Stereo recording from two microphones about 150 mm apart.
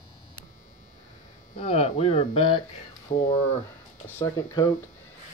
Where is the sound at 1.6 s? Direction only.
40° left (ahead or behind).